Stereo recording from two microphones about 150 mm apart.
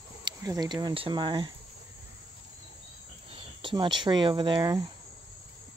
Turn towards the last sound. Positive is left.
turn(degrees=-30)  # may be behind; listen again after turning